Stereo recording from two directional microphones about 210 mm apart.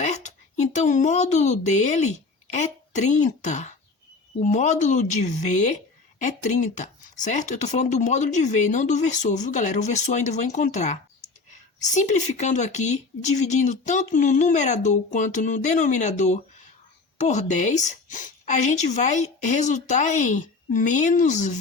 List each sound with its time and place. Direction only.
0.0 s speech: 35° left (ahead or behind)